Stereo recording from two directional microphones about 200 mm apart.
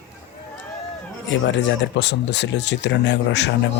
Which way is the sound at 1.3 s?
65° left (ahead or behind).